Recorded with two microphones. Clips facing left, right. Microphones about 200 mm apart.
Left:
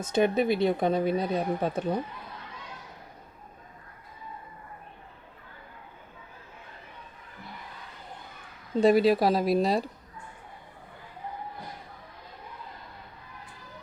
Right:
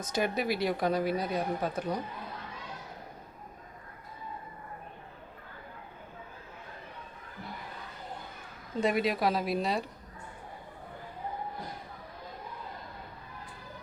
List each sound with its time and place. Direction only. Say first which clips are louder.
0.0 s speech: left 7 dB; 25° left (ahead or behind)
8.8 s speech: left 7 dB; 35° left (ahead or behind)